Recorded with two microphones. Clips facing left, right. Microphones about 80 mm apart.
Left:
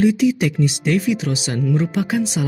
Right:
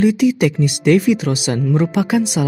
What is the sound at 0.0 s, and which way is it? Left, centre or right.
Speech, right.